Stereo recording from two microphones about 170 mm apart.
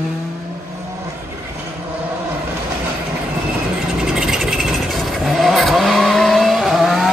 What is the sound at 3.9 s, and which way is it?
Vehicle, 5° right (ahead or behind).